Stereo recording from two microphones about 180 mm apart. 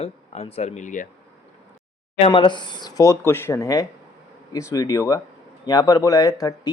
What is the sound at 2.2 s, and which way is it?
Speech, 25° left (ahead or behind).